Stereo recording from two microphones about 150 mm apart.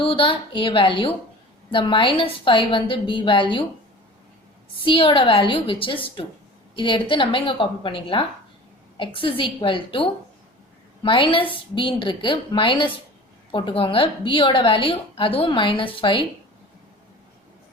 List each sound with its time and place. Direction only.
0.0 s a woman's voice: 35° left (ahead or behind)
4.8 s a woman's voice: 35° left (ahead or behind)